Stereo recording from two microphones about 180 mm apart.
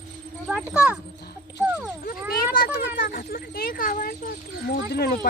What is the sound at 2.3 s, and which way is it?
Speech, 55° left (ahead or behind).